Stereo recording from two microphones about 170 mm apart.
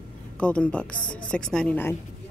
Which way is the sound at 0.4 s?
10° left (ahead or behind).